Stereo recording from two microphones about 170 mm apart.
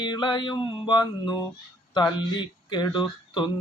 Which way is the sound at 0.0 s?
25° left (ahead or behind).